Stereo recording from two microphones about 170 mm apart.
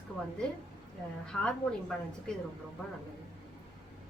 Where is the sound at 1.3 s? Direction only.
5° left (ahead or behind).